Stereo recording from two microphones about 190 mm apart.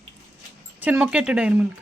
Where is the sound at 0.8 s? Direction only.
10° right (ahead or behind).